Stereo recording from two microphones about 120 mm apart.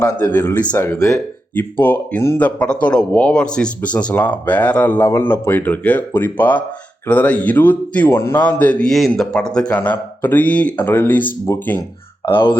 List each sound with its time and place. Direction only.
0.0 s a man's voice: 15° left (ahead or behind)
12.3 s speech: 45° left (ahead or behind)